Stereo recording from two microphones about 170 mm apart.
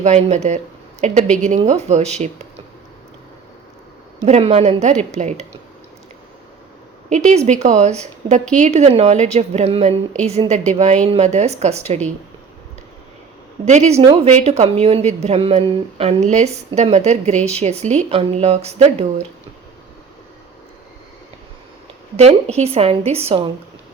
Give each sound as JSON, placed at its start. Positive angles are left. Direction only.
{"t": 0.0, "sound": "a woman's voice", "side_deg": -40}
{"t": 4.3, "sound": "a woman's voice", "side_deg": -35}
{"t": 7.1, "sound": "a woman's voice", "side_deg": -45}
{"t": 13.7, "sound": "a woman's voice", "side_deg": -45}
{"t": 22.1, "sound": "a woman's voice", "side_deg": -40}